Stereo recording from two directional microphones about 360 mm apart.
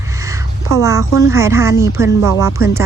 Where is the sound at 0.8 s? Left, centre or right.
Centre.